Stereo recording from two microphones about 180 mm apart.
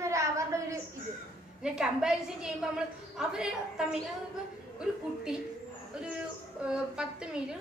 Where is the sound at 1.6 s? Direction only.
5° right (ahead or behind).